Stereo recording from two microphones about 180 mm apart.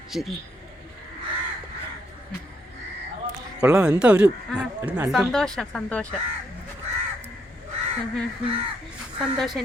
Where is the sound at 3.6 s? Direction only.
5° right (ahead or behind).